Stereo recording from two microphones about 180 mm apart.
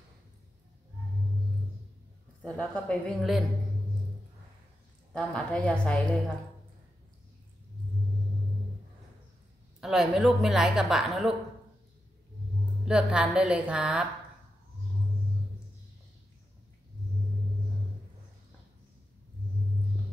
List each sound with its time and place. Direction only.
2.4 s a woman's voice: 5° left (ahead or behind)
5.1 s a woman's voice: 5° left (ahead or behind)
9.8 s a woman's voice: centre (ahead or behind)
12.8 s a woman's voice: 5° right (ahead or behind)